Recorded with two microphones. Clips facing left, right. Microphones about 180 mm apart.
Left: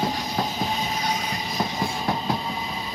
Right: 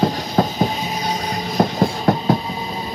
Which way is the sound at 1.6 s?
55° right (ahead or behind).